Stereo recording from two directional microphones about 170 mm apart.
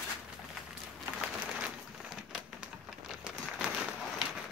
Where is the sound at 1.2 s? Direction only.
5° right (ahead or behind).